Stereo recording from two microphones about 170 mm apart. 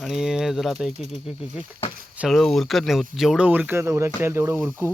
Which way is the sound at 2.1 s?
Centre (ahead or behind).